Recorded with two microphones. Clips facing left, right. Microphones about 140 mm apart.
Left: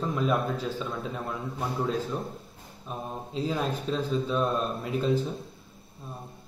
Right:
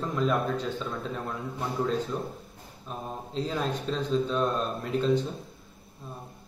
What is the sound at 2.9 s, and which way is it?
A man's voice, 5° left (ahead or behind).